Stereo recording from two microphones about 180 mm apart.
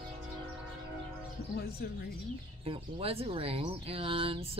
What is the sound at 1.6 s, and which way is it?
Speech, 60° left (ahead or behind).